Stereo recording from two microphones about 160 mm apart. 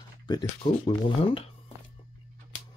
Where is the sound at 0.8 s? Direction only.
30° left (ahead or behind).